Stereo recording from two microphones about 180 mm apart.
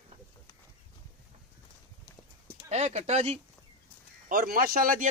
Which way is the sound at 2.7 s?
40° right (ahead or behind).